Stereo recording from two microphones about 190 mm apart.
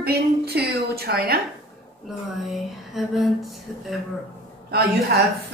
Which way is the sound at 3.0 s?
Centre (ahead or behind).